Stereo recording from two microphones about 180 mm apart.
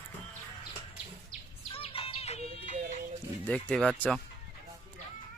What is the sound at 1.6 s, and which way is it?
Music, 30° left (ahead or behind).